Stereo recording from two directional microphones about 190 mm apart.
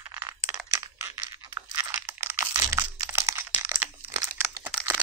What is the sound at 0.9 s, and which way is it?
Crunch, 15° right (ahead or behind).